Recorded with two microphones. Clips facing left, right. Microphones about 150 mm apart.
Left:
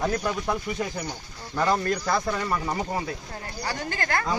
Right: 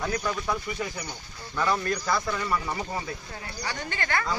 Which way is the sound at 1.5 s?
35° left (ahead or behind).